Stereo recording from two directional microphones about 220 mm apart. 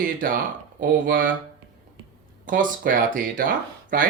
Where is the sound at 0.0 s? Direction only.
40° right (ahead or behind).